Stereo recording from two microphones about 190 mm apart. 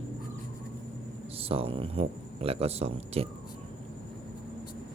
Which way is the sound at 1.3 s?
30° right (ahead or behind).